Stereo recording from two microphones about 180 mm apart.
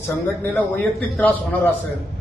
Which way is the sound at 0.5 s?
10° left (ahead or behind).